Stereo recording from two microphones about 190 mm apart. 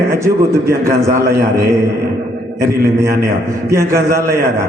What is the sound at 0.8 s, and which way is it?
Speech, 15° right (ahead or behind).